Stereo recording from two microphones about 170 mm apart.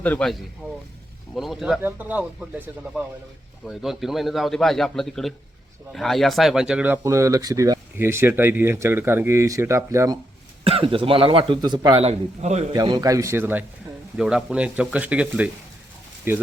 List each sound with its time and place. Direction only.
0.0 s a man's voice: 5° left (ahead or behind); by 10.2 s 15° right (ahead or behind)
10.6 s a man's voice: 35° right (ahead or behind)
12.7 s speech: 25° right (ahead or behind)